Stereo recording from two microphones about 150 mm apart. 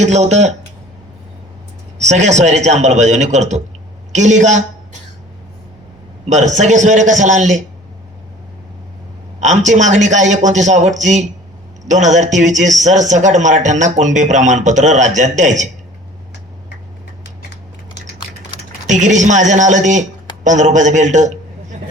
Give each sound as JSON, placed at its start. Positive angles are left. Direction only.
{"t": 0.0, "sound": "a man's voice", "side_deg": -50}
{"t": 2.0, "sound": "a man's voice", "side_deg": -50}
{"t": 6.2, "sound": "a man's voice", "side_deg": -55}
{"t": 9.4, "sound": "a man's voice", "side_deg": -55}
{"t": 18.9, "sound": "a man's voice", "side_deg": -55}